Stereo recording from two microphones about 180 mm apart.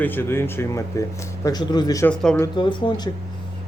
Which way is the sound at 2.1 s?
5° left (ahead or behind).